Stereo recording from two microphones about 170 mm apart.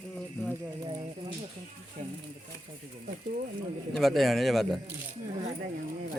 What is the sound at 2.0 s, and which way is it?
Speech, 40° right (ahead or behind).